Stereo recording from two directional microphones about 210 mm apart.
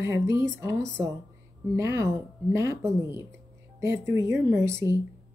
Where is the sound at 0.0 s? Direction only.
15° right (ahead or behind).